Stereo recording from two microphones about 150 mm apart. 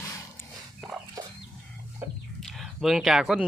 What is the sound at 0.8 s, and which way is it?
Chicken, 5° left (ahead or behind).